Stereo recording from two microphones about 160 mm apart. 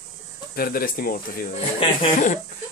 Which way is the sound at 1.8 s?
30° left (ahead or behind).